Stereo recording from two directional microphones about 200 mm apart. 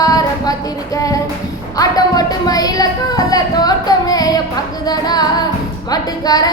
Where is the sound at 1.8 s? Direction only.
20° left (ahead or behind).